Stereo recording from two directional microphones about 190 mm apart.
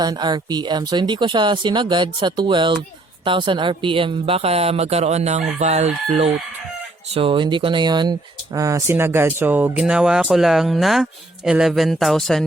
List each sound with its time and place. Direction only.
0.0 s a woman's voice: 25° right (ahead or behind); by 12.5 s centre (ahead or behind)